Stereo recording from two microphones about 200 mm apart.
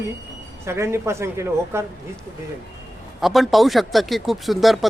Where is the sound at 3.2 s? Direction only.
Centre (ahead or behind).